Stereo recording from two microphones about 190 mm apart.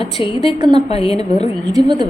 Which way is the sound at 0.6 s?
25° right (ahead or behind).